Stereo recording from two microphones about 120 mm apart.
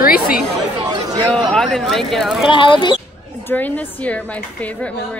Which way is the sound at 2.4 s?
45° left (ahead or behind).